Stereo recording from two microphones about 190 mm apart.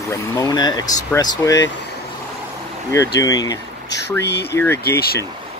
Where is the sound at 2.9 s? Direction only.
15° left (ahead or behind).